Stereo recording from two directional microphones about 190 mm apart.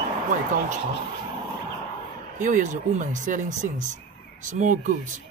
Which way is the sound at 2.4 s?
45° right (ahead or behind).